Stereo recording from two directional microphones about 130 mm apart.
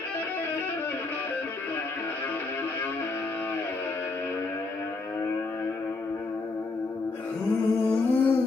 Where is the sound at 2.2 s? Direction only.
15° left (ahead or behind).